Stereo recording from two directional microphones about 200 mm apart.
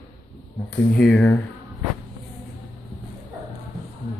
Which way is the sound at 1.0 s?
5° left (ahead or behind).